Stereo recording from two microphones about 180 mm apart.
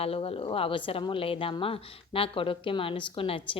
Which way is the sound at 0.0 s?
30° left (ahead or behind).